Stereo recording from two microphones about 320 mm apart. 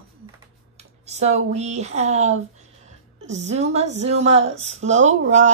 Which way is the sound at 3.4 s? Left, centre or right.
Right.